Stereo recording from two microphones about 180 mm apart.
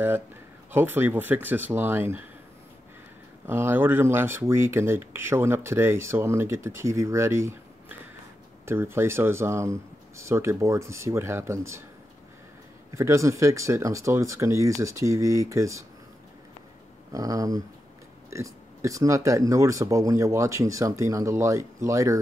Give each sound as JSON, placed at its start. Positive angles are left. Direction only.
{"t": 0.7, "sound": "speech", "side_deg": -10}
{"t": 3.4, "sound": "speech", "side_deg": -15}
{"t": 8.6, "sound": "speech", "side_deg": -15}
{"t": 12.9, "sound": "speech", "side_deg": -15}
{"t": 17.1, "sound": "speech", "side_deg": -20}